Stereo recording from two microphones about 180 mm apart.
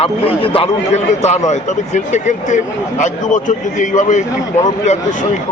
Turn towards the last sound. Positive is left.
turn(degrees=40)  # may be behind; listen again after turning